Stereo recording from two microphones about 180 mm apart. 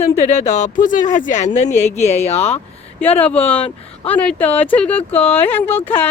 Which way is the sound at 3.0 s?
10° left (ahead or behind).